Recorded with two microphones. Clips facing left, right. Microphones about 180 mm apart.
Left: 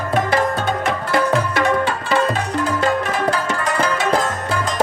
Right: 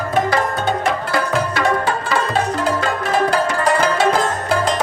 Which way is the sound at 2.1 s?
35° right (ahead or behind).